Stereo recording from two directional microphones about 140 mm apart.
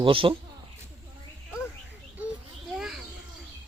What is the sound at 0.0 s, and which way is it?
Speech, 40° right (ahead or behind).